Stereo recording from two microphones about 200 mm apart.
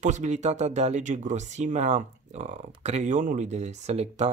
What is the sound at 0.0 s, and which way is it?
Speech, 35° right (ahead or behind).